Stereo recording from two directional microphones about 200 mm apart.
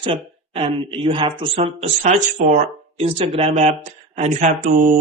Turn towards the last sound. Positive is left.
turn(degrees=-40)  # may be behind; listen again after turning